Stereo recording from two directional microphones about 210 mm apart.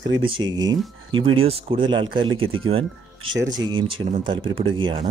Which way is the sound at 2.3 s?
75° right (ahead or behind).